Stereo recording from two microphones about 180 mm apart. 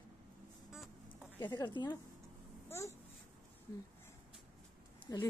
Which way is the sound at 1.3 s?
25° left (ahead or behind).